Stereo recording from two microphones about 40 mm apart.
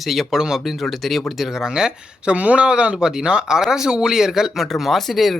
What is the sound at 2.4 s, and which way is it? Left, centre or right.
Speech, right.